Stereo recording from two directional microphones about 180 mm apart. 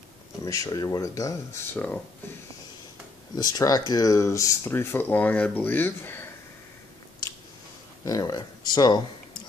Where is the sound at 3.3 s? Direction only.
20° left (ahead or behind).